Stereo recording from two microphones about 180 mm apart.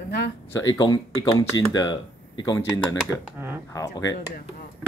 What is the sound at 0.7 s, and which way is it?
Speech, 20° left (ahead or behind).